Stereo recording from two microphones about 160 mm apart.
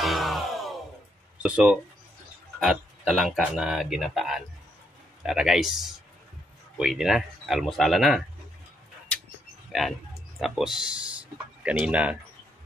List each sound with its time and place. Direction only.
0.0 s a sound: centre (ahead or behind)
1.4 s speech: 5° right (ahead or behind)
9.7 s speech: centre (ahead or behind)